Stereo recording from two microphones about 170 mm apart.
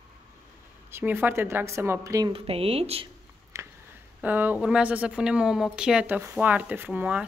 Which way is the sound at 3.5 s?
20° right (ahead or behind).